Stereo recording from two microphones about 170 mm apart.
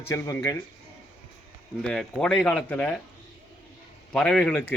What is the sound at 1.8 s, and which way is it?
Speech, 5° left (ahead or behind).